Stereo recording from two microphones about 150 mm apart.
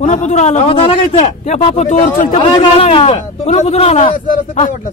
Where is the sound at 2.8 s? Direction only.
40° left (ahead or behind).